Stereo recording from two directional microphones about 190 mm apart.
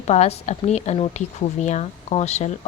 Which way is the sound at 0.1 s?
35° left (ahead or behind).